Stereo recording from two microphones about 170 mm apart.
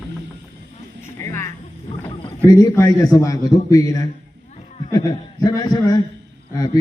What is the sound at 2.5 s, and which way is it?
A man's voice, 20° left (ahead or behind).